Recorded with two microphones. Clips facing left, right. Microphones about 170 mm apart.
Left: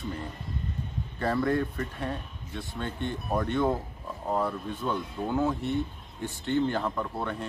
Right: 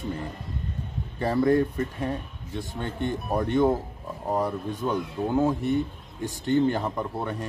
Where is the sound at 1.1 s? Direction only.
15° right (ahead or behind).